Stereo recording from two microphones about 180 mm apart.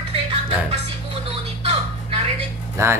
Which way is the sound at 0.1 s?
35° right (ahead or behind).